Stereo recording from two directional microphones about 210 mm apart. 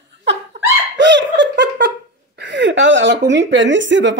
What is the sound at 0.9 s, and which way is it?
Giggle, 60° right (ahead or behind).